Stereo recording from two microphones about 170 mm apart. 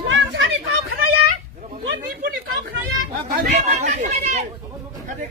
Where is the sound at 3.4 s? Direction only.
40° right (ahead or behind).